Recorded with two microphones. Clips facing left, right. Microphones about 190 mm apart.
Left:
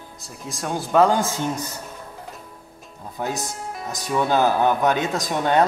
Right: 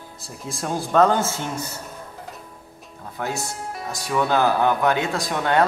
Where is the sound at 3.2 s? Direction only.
15° left (ahead or behind).